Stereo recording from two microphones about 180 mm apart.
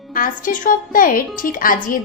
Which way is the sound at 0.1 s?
50° left (ahead or behind).